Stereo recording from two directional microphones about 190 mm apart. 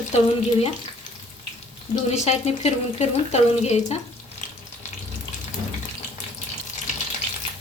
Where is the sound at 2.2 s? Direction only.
35° left (ahead or behind).